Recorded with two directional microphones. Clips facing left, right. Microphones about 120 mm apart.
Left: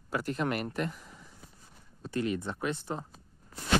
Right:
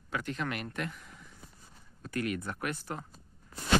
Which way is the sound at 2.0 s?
25° left (ahead or behind).